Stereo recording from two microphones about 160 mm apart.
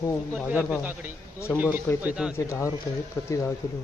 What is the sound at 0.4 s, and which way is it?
A man's voice, 10° right (ahead or behind).